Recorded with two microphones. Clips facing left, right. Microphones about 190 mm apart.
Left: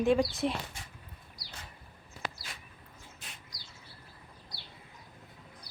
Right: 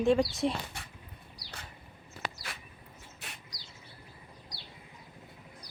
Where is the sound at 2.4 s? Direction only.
70° right (ahead or behind).